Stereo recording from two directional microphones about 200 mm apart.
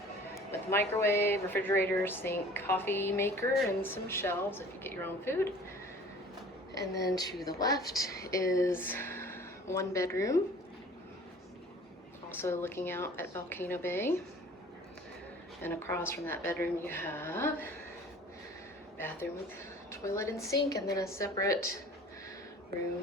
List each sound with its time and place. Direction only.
0.3 s speech: 10° left (ahead or behind)
7.2 s speech: 20° left (ahead or behind)
12.3 s speech: 10° left (ahead or behind)
15.6 s speech: 10° left (ahead or behind)
18.9 s speech: 10° left (ahead or behind)